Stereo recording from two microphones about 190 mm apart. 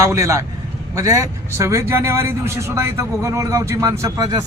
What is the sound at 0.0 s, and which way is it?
A man's voice, 15° right (ahead or behind).